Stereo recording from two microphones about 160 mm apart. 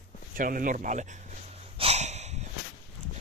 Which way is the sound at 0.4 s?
60° right (ahead or behind).